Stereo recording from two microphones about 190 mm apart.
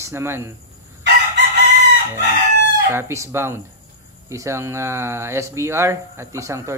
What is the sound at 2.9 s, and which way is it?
Speech, 15° right (ahead or behind).